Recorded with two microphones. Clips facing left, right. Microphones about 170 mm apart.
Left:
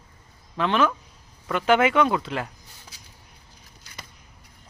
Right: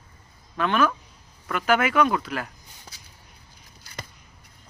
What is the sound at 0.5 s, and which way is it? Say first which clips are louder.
Speech: even; 25° left (ahead or behind).